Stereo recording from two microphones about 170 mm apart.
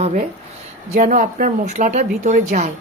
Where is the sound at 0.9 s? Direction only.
50° right (ahead or behind).